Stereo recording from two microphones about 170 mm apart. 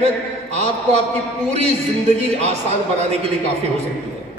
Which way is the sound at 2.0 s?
40° right (ahead or behind).